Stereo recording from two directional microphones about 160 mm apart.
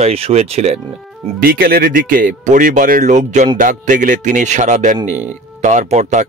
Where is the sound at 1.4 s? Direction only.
70° right (ahead or behind); by 6.3 s 45° right (ahead or behind).